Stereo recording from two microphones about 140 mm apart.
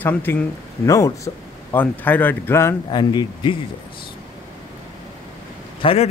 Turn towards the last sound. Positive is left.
turn(degrees=40)  # may be behind; listen again after turning